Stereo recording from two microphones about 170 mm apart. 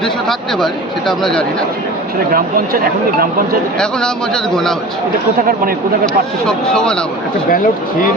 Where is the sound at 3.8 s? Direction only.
5° left (ahead or behind).